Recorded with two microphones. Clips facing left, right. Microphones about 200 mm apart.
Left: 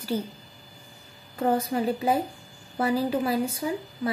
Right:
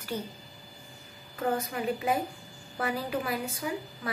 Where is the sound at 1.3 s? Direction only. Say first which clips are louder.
Left 6 dB; 30° left (ahead or behind).